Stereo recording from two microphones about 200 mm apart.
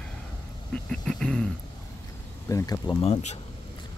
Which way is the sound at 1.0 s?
5° left (ahead or behind).